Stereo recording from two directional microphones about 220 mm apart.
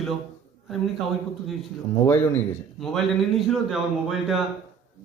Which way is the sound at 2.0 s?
10° left (ahead or behind).